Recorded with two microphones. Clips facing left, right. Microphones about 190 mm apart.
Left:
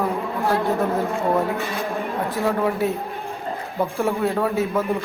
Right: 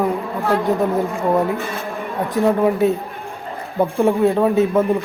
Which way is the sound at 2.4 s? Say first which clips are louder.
Right 7 dB; 15° right (ahead or behind).